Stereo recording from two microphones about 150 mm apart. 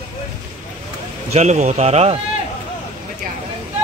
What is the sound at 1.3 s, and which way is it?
Speech, 50° right (ahead or behind).